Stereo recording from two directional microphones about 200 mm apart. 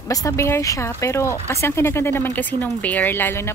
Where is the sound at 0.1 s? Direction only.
15° left (ahead or behind).